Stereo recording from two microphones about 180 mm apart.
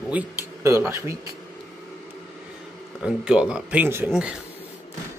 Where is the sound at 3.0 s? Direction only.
5° right (ahead or behind).